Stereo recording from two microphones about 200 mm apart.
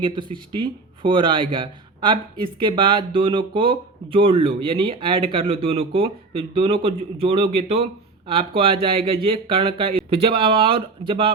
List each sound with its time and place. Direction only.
0.0 s speech: 25° right (ahead or behind)